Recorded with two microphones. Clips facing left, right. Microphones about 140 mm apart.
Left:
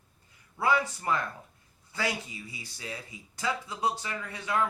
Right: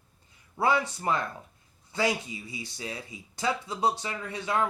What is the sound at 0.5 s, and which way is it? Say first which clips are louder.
Speech: right 1 dB; 25° right (ahead or behind).